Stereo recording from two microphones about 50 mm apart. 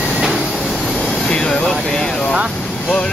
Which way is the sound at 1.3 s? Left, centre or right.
Centre.